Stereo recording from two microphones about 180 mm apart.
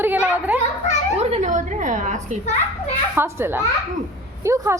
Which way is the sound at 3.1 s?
10° right (ahead or behind).